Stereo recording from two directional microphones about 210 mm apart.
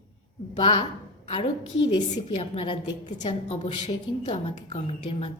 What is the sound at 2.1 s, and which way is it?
A woman's voice, 30° left (ahead or behind).